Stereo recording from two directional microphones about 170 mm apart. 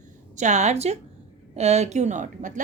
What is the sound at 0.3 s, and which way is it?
A woman's voice, 45° right (ahead or behind).